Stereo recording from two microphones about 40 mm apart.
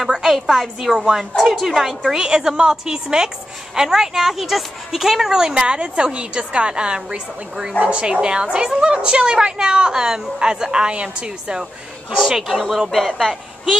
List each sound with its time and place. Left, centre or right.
0.1 s a woman's voice: centre
5.5 s a woman's voice: right
12.2 s a woman's voice: centre
12.9 s speech: centre